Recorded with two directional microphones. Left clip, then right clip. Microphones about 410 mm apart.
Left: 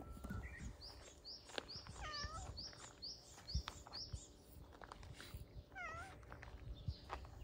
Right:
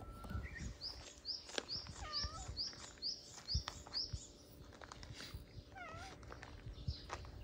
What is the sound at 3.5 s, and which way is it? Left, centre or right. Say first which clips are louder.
Chirp: right 8 dB; centre.